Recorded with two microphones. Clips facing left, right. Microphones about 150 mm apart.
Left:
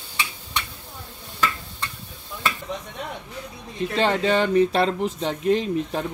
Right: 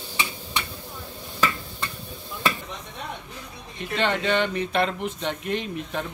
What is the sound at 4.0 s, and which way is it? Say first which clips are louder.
Speech: left 3 dB; 35° left (ahead or behind).